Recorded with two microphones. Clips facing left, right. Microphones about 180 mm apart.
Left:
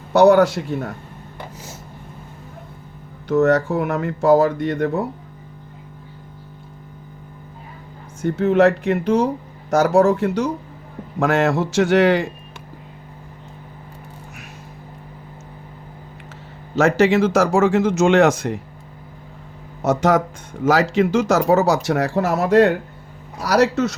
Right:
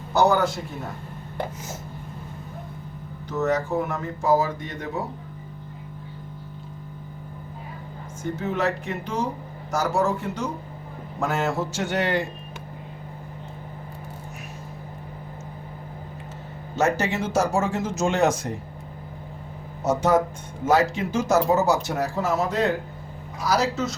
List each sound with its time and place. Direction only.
0.1 s speech: 70° left (ahead or behind)
3.2 s speech: 75° left (ahead or behind)
8.2 s a man's voice: 70° left (ahead or behind); by 12.3 s 90° left
16.7 s speech: 90° left
19.8 s speech: 85° left